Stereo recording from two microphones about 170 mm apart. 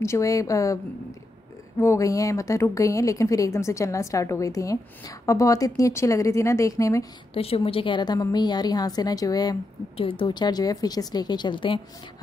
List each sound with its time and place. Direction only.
0.0 s speech: 15° left (ahead or behind)
1.8 s speech: 15° left (ahead or behind)
7.3 s speech: 35° left (ahead or behind)